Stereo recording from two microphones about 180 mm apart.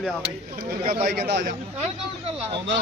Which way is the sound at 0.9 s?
55° right (ahead or behind).